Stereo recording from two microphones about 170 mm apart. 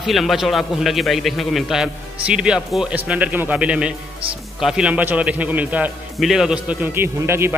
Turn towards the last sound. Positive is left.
turn(degrees=-15)  # may be behind; listen again after turning